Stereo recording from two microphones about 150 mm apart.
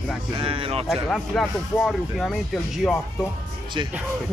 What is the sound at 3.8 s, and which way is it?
Speech, 35° right (ahead or behind).